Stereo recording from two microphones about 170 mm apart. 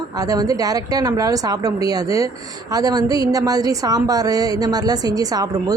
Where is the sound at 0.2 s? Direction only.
20° right (ahead or behind).